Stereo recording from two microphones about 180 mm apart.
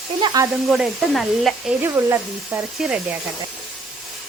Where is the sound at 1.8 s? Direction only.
10° right (ahead or behind).